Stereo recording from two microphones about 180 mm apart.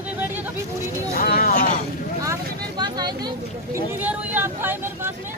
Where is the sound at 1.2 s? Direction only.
55° left (ahead or behind).